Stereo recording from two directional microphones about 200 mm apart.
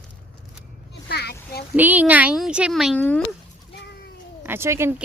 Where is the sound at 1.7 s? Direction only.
10° right (ahead or behind).